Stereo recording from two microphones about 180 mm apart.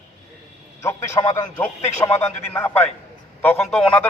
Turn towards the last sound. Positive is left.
turn(degrees=5)  # may be behind; listen again after turning